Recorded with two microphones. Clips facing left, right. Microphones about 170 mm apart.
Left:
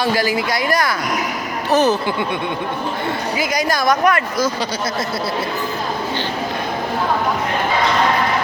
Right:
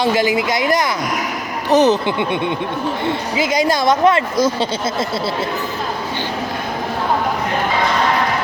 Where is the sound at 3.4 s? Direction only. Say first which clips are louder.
Right 4 dB; 25° right (ahead or behind).